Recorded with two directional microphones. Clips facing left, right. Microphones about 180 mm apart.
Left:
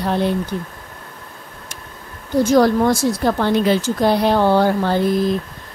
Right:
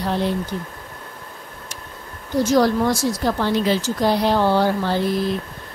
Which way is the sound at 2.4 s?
55° left (ahead or behind).